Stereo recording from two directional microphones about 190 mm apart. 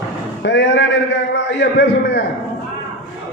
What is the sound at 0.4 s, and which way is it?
A man's voice, 70° left (ahead or behind).